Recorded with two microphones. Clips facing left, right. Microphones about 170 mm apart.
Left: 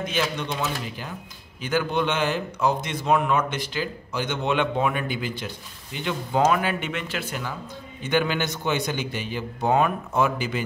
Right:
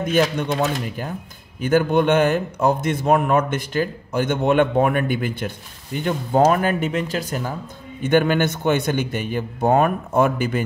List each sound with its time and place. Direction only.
0.0 s a man's voice: 50° right (ahead or behind)
8.0 s a man's voice: 50° right (ahead or behind)